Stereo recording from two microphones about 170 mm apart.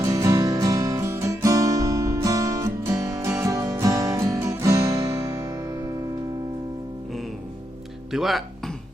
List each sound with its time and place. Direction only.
0.0 s music: 20° right (ahead or behind)
8.1 s speech: centre (ahead or behind)